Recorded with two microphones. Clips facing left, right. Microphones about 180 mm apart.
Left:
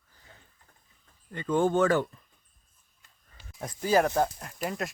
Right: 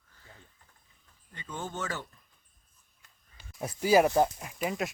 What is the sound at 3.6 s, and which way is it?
Speech, 10° right (ahead or behind).